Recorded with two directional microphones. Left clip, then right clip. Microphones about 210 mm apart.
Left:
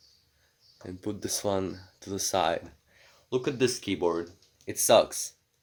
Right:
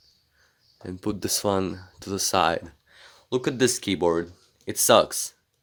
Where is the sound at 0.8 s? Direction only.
35° right (ahead or behind).